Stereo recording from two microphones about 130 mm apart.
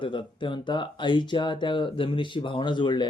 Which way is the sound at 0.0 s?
40° left (ahead or behind).